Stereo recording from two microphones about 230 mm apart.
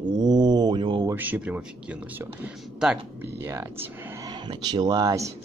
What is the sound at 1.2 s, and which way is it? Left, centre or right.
Speech, centre.